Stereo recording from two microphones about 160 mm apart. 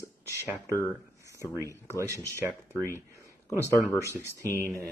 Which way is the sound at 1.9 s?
15° right (ahead or behind).